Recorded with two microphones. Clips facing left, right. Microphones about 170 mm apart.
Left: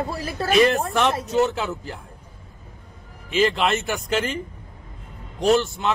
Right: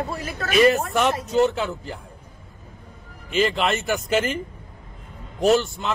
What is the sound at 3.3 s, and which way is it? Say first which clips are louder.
Speech: left 1 dB; centre (ahead or behind).